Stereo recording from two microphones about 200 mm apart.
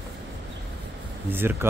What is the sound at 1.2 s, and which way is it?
Speech, 10° right (ahead or behind).